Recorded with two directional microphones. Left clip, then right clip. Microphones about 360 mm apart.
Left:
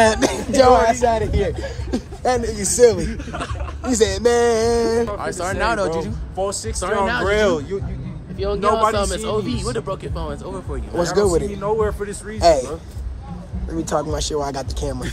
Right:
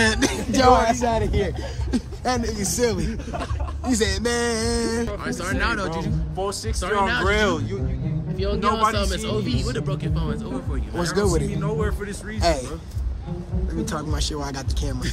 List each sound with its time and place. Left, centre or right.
0.0 s speech: centre
6.3 s speech: centre
8.4 s speech: centre
11.1 s speech: centre
11.6 s speech: centre
12.4 s speech: centre
13.8 s speech: centre